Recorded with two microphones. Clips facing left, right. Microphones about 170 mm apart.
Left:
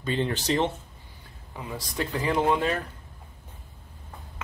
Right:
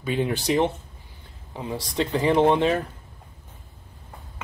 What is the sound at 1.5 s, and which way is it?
Speech, 25° right (ahead or behind).